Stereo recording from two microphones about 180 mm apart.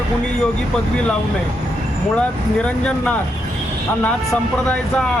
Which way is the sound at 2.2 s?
5° left (ahead or behind).